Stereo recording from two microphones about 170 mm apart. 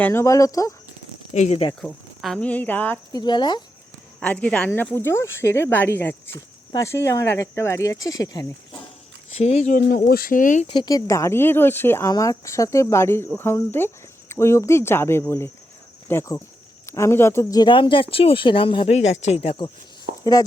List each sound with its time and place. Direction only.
0.0 s speech: 15° left (ahead or behind)
1.3 s speech: 40° left (ahead or behind)
1.8 s speech: centre (ahead or behind)
3.1 s speech: 25° left (ahead or behind)
4.2 s speech: 5° left (ahead or behind)
9.4 s speech: 40° left (ahead or behind)
9.9 s speech: 65° left (ahead or behind)
10.7 s speech: 25° left (ahead or behind)